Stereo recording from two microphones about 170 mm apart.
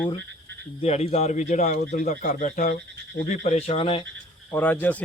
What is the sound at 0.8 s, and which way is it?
A man's voice, 40° left (ahead or behind).